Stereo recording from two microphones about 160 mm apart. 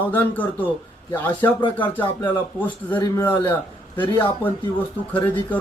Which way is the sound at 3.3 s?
30° left (ahead or behind).